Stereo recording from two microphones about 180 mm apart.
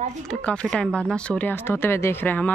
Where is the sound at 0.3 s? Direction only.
5° left (ahead or behind).